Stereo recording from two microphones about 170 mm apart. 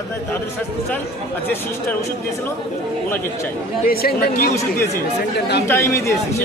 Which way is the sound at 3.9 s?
60° left (ahead or behind).